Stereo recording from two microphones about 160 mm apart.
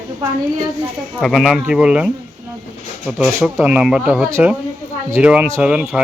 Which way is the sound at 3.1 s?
Centre (ahead or behind).